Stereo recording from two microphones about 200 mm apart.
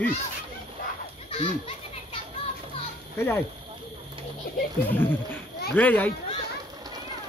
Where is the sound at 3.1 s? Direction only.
10° left (ahead or behind).